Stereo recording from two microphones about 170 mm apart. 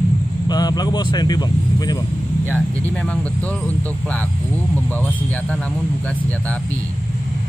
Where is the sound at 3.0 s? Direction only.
10° left (ahead or behind).